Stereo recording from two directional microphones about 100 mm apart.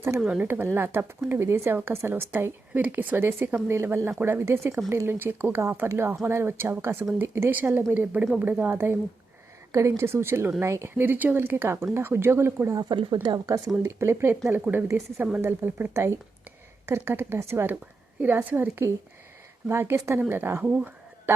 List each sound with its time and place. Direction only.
0.3 s a woman's voice: 20° right (ahead or behind)
12.8 s speech: 45° right (ahead or behind)
13.2 s a woman's voice: 35° right (ahead or behind); by 21.3 s 15° right (ahead or behind)